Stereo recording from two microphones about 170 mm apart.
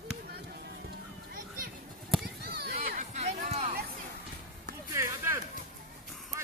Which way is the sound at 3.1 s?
40° right (ahead or behind).